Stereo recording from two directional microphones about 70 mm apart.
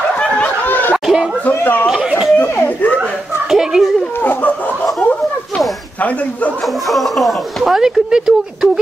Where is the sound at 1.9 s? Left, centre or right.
Centre.